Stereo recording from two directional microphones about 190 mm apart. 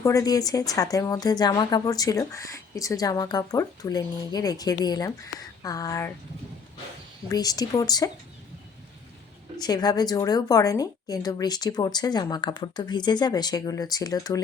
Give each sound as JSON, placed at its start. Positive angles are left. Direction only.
{"t": 0.0, "sound": "a woman's voice", "side_deg": 15}
{"t": 7.3, "sound": "a woman's voice", "side_deg": 20}
{"t": 9.6, "sound": "a woman's voice", "side_deg": 20}